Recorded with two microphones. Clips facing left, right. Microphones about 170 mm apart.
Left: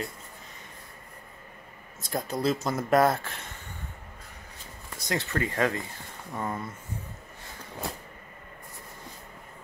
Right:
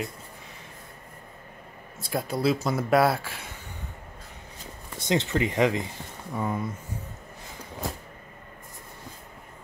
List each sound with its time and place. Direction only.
2.0 s speech: 5° right (ahead or behind)
4.9 s speech: 25° right (ahead or behind)
6.3 s speech: 5° right (ahead or behind)